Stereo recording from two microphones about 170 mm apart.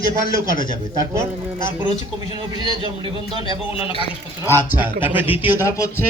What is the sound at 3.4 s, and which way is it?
Speech, 30° left (ahead or behind).